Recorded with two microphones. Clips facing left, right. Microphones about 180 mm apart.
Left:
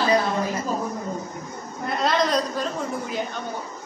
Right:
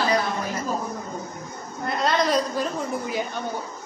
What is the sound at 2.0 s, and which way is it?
Speech, 5° right (ahead or behind).